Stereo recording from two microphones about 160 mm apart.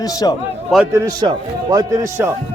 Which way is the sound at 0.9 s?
20° right (ahead or behind).